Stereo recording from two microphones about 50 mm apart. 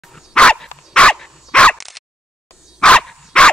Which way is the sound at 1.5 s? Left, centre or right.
Left.